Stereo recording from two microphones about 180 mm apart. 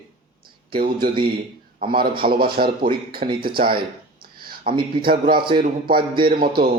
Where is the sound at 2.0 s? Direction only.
55° right (ahead or behind).